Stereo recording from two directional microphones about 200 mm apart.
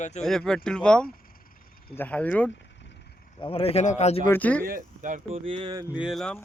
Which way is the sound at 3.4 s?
30° left (ahead or behind).